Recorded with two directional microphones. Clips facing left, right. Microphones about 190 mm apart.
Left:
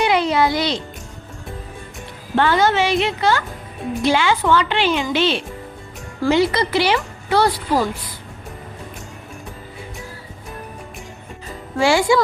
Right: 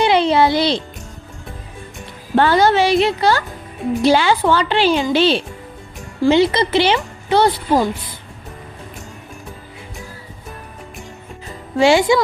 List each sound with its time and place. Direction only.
0.0 s music: 30° right (ahead or behind)
2.3 s speech: 35° right (ahead or behind); by 7.9 s 20° right (ahead or behind)
11.8 s speech: 20° right (ahead or behind)